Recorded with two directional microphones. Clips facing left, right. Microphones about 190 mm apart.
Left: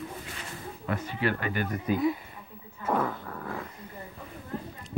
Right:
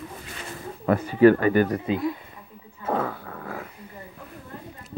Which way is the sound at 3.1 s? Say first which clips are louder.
Right 1 dB; 45° right (ahead or behind).